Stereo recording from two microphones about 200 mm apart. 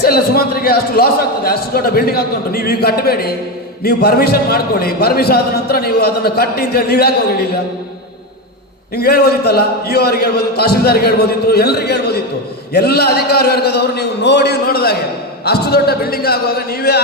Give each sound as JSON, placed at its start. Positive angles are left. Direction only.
{"t": 0.0, "sound": "a man's voice", "side_deg": 50}
{"t": 9.0, "sound": "a man's voice", "side_deg": 50}